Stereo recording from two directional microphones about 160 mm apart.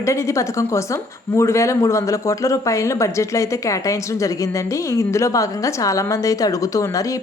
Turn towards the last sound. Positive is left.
turn(degrees=20)  # may be behind; listen again after turning